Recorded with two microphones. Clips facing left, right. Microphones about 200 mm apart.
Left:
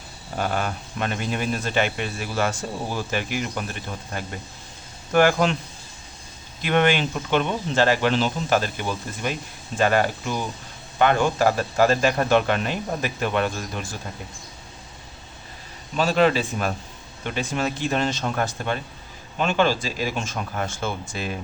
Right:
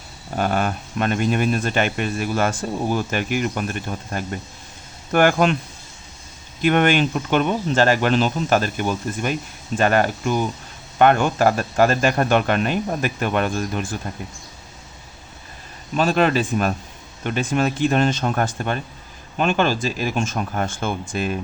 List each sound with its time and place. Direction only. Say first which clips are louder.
0.3 s speech: right 4 dB; 50° right (ahead or behind)
6.6 s speech: right 3 dB; 50° right (ahead or behind)
16.0 s speech: right 1 dB; 50° right (ahead or behind)